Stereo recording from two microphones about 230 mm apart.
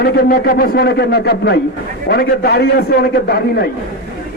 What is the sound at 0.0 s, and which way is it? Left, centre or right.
Speech, left.